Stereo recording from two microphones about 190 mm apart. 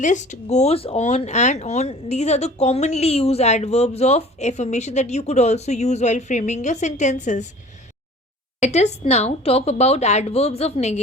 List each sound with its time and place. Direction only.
0.0 s speech: 40° left (ahead or behind)
8.6 s speech: 35° left (ahead or behind)